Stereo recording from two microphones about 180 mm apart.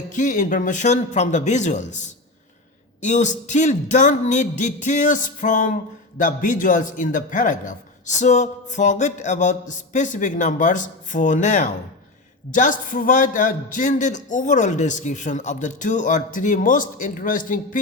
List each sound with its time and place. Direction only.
0.1 s speech: 45° left (ahead or behind)